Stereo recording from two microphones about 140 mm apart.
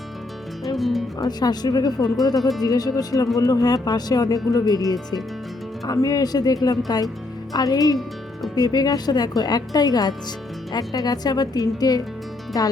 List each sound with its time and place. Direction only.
0.8 s speech: centre (ahead or behind)
1.2 s speech: 30° left (ahead or behind)